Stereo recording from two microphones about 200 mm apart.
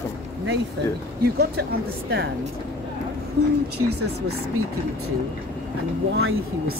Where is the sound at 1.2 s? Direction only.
50° right (ahead or behind).